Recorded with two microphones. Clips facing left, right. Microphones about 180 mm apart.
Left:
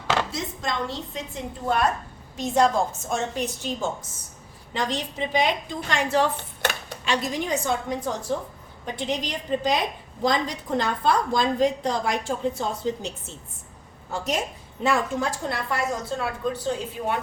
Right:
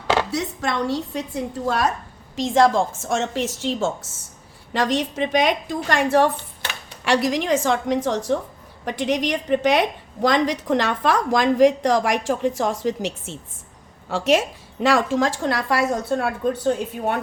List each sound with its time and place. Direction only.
0.3 s a woman's voice: 70° right (ahead or behind)
1.6 s a woman's voice: 90° right
4.7 s a woman's voice: 75° right (ahead or behind); by 6.3 s 60° right (ahead or behind)
7.0 s a woman's voice: 80° right
8.8 s a woman's voice: 75° right (ahead or behind)
10.2 s a woman's voice: 85° right; by 17.2 s 55° right (ahead or behind)